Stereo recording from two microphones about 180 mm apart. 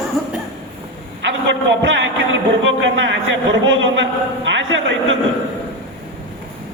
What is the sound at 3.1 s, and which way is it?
A man's voice, 90° right.